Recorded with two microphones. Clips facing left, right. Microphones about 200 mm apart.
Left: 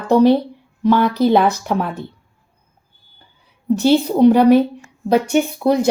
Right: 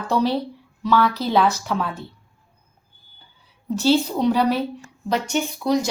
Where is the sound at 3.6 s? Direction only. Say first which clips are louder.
Left 5 dB; 60° left (ahead or behind).